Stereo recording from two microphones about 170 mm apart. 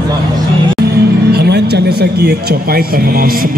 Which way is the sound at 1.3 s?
70° right (ahead or behind).